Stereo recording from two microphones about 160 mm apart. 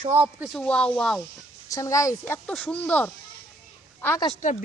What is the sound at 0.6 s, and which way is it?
Speech, 5° left (ahead or behind).